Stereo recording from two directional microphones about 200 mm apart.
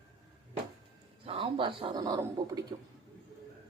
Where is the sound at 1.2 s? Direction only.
25° right (ahead or behind).